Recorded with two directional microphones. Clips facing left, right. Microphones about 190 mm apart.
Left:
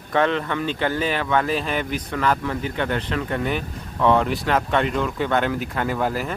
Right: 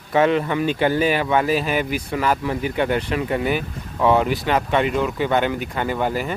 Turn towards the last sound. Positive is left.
turn(degrees=0)  # may be behind; listen again after turning